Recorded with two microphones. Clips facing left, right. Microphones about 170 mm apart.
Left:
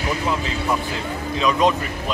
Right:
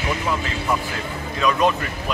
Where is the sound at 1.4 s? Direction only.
20° left (ahead or behind).